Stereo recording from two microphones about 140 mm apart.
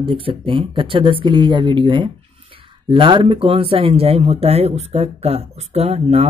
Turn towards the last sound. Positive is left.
turn(degrees=-45)  # may be behind; listen again after turning